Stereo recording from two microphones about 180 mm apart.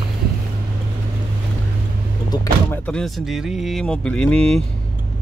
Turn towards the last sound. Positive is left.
turn(degrees=5)  # may be behind; listen again after turning